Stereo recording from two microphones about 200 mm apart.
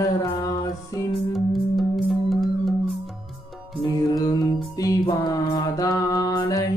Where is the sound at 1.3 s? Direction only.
Centre (ahead or behind).